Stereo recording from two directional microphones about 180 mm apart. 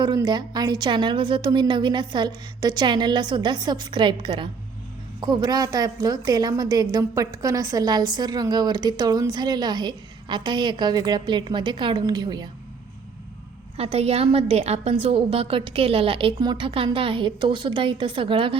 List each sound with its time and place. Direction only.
0.0 s a woman's voice: 25° right (ahead or behind)
13.7 s a woman's voice: 35° right (ahead or behind)